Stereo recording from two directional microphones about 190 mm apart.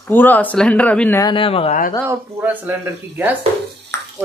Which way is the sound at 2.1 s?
10° right (ahead or behind).